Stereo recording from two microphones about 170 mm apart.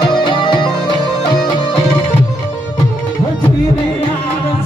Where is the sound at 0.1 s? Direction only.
30° left (ahead or behind).